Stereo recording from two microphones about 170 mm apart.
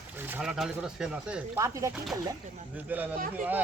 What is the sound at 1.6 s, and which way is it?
Speech, 20° right (ahead or behind).